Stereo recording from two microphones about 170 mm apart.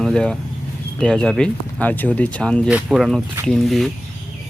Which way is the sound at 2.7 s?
5° right (ahead or behind).